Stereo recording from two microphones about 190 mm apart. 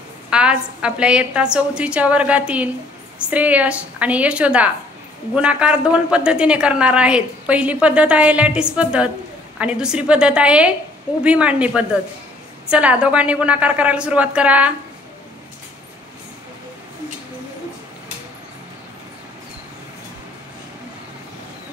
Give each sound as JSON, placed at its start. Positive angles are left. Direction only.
{"t": 0.3, "sound": "a woman's voice", "side_deg": -5}